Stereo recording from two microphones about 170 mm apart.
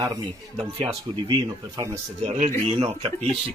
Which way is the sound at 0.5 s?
30° right (ahead or behind).